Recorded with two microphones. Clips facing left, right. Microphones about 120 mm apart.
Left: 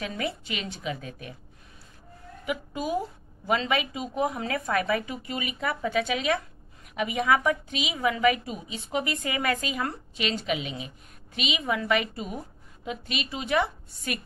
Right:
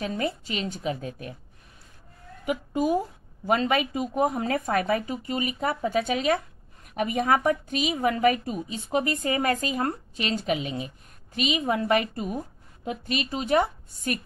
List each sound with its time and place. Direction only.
0.0 s a woman's voice: 35° right (ahead or behind)
2.4 s a woman's voice: 45° right (ahead or behind)